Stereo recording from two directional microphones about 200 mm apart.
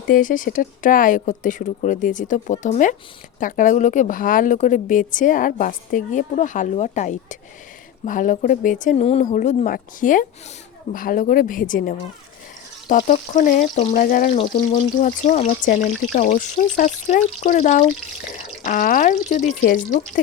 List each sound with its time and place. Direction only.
0.1 s a woman's voice: 40° left (ahead or behind)